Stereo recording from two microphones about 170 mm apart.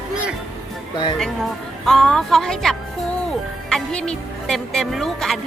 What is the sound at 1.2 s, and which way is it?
Speech, centre (ahead or behind).